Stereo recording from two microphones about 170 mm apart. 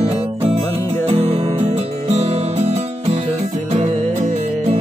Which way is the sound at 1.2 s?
35° right (ahead or behind).